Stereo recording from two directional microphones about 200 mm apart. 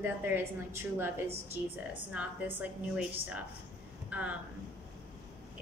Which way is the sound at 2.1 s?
5° right (ahead or behind).